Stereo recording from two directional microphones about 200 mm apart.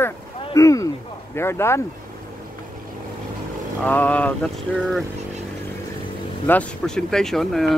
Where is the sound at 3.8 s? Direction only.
10° left (ahead or behind).